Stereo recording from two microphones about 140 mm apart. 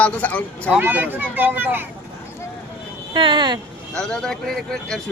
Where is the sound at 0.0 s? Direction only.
10° left (ahead or behind).